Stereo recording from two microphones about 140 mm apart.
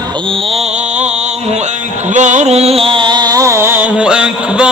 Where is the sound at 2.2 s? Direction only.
60° right (ahead or behind).